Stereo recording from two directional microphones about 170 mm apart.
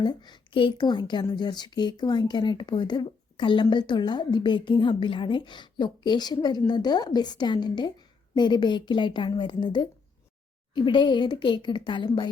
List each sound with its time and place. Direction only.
0.0 s a woman's voice: 25° left (ahead or behind)